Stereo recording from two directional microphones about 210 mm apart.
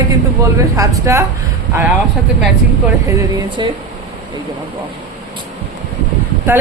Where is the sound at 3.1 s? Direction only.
15° right (ahead or behind).